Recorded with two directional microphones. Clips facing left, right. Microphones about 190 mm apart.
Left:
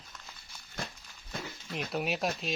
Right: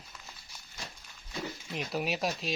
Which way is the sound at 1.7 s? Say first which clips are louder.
Left 1 dB; centre (ahead or behind).